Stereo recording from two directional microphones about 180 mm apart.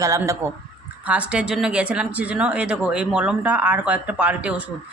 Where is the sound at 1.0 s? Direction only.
5° right (ahead or behind).